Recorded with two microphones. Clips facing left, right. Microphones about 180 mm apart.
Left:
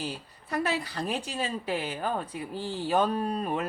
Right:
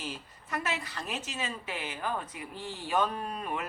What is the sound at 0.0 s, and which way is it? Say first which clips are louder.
A woman's voice: left 4 dB; 35° left (ahead or behind).